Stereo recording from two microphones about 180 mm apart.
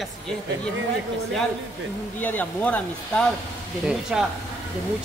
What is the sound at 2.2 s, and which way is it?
Speech, 10° left (ahead or behind).